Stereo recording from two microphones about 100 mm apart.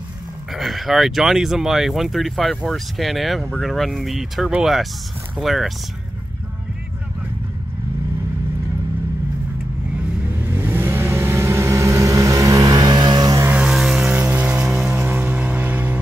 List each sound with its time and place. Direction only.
0.5 s speech: centre (ahead or behind)
10.4 s vehicle: 20° right (ahead or behind); by 13.4 s 45° right (ahead or behind)
13.5 s vehicle: 5° right (ahead or behind)